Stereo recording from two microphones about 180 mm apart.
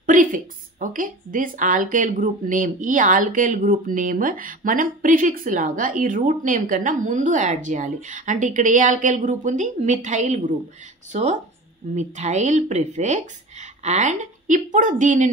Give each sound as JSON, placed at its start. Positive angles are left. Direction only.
{"t": 0.0, "sound": "a woman's voice", "side_deg": -50}